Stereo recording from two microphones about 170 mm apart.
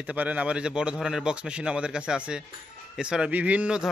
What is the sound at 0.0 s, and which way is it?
A man's voice, 10° right (ahead or behind).